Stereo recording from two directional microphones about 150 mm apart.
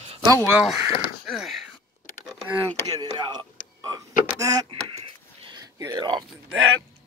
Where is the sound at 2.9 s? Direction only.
30° right (ahead or behind).